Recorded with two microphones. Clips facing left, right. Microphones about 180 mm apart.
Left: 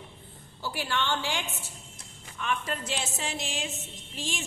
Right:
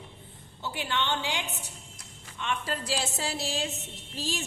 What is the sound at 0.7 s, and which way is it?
A woman's voice, 20° right (ahead or behind).